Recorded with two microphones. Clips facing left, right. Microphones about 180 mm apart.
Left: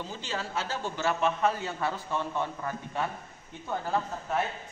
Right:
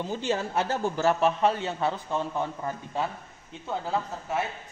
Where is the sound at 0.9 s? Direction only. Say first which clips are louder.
Right 4 dB; 40° right (ahead or behind).